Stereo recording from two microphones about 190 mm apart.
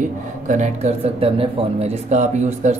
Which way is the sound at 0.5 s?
35° right (ahead or behind).